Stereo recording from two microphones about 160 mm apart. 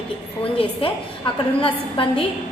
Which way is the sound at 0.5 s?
35° left (ahead or behind).